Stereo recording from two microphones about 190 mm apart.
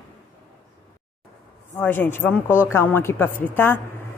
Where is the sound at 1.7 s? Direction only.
10° left (ahead or behind).